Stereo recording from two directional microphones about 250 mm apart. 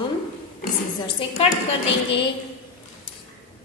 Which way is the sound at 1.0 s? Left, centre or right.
Left.